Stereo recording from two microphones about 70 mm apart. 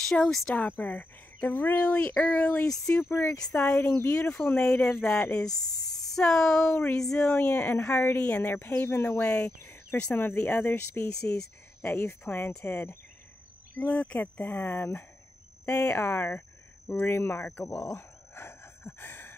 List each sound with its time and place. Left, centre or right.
0.0 s speech: centre
0.6 s speech: left
2.9 s speech: left
7.0 s speech: centre
16.0 s speech: left
17.7 s speech: left
18.3 s a sound: left